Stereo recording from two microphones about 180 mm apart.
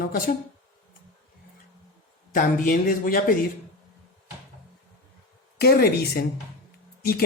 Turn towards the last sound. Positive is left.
turn(degrees=55)  # may be behind; listen again after turning